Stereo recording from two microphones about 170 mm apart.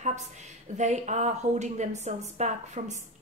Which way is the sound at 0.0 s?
45° right (ahead or behind).